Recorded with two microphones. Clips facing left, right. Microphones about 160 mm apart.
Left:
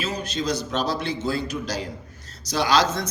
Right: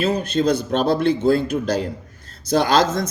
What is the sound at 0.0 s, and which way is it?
A man's voice, 55° right (ahead or behind).